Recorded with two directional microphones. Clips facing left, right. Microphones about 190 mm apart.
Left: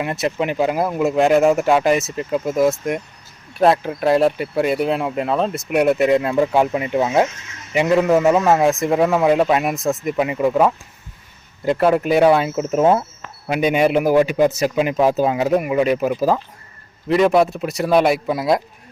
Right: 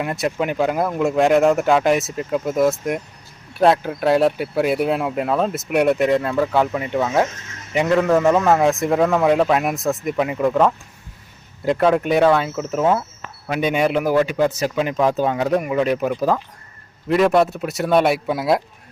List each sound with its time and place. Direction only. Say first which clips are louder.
0.0 s a man's voice: left 1 dB; centre (ahead or behind)
6.1 s a man's voice: left 2 dB; 15° left (ahead or behind)
12.2 s a man's voice: left 2 dB; 15° left (ahead or behind)